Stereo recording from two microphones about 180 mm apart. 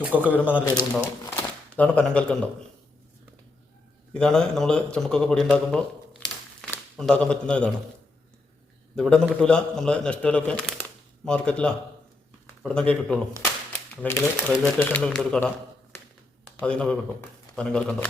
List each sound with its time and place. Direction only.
0.2 s speech: 10° left (ahead or behind)
1.4 s speech: 10° left (ahead or behind)
4.1 s a man's voice: 5° left (ahead or behind)
9.0 s speech: 5° left (ahead or behind)